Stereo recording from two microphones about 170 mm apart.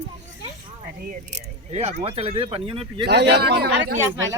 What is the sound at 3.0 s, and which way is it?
Speech, 75° right (ahead or behind).